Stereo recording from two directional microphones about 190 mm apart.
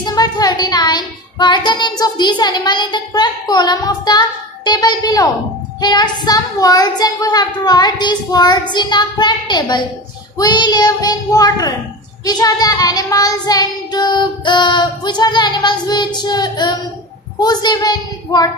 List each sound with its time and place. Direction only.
0.0 s music: 20° left (ahead or behind)
5.8 s child singing: 20° left (ahead or behind)